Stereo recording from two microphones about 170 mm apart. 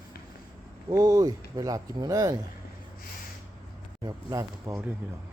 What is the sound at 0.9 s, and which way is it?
Speech, 20° right (ahead or behind).